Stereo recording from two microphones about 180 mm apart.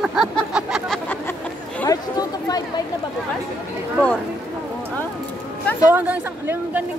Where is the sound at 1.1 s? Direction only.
10° left (ahead or behind).